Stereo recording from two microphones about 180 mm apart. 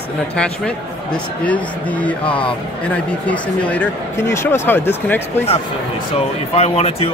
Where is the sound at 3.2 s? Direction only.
5° left (ahead or behind).